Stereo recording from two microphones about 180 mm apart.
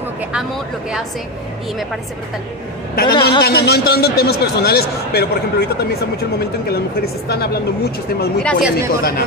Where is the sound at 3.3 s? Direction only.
60° left (ahead or behind).